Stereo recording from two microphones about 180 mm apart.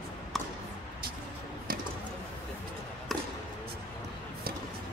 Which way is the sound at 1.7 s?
55° right (ahead or behind).